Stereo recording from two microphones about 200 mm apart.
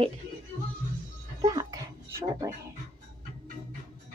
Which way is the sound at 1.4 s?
20° right (ahead or behind).